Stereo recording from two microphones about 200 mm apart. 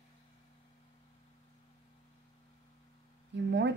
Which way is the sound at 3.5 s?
60° right (ahead or behind).